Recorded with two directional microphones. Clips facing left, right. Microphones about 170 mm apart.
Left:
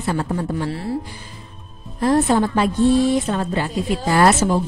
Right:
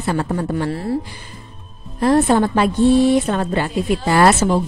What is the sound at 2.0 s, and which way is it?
A woman's voice, 65° right (ahead or behind).